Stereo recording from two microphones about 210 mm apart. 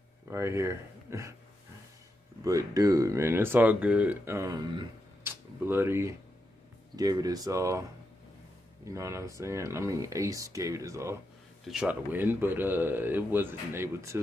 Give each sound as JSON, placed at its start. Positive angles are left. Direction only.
{"t": 0.3, "sound": "speech", "side_deg": -10}
{"t": 2.4, "sound": "speech", "side_deg": -15}
{"t": 8.8, "sound": "speech", "side_deg": -15}
{"t": 11.6, "sound": "speech", "side_deg": -5}